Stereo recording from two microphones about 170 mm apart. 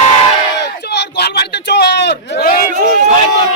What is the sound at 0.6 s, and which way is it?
Speech, 75° left (ahead or behind).